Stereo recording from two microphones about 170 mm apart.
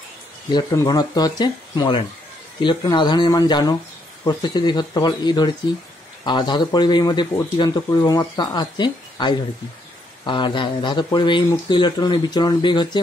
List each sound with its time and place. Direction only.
0.5 s speech: 25° left (ahead or behind)